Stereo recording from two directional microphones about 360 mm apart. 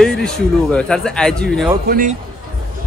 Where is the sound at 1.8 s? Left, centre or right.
Right.